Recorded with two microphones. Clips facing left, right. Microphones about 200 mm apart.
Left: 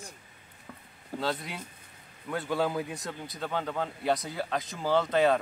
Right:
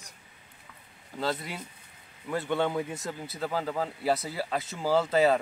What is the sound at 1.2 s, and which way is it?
Speech, centre (ahead or behind).